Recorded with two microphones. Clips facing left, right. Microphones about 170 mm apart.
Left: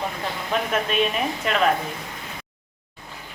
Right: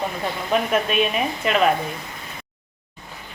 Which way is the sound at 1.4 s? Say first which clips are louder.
Right 4 dB; 5° right (ahead or behind).